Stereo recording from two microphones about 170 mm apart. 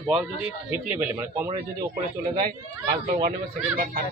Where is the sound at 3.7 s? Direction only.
55° right (ahead or behind).